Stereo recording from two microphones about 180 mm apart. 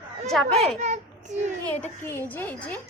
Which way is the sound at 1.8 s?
15° left (ahead or behind).